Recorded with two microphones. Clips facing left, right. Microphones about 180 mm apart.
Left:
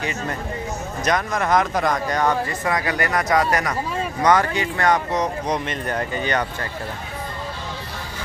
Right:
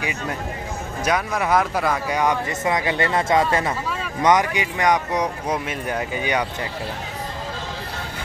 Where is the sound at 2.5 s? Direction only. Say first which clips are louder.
Right 1 dB; 20° right (ahead or behind).